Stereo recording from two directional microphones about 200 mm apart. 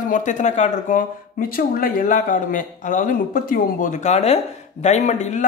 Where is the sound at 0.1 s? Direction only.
40° left (ahead or behind).